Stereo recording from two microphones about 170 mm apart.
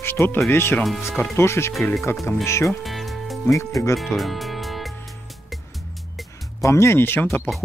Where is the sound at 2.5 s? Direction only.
15° left (ahead or behind).